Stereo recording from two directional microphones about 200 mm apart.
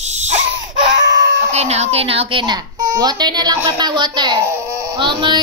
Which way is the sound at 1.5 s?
35° right (ahead or behind).